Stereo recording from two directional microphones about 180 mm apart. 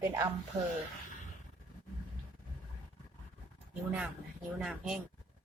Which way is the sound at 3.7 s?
5° right (ahead or behind).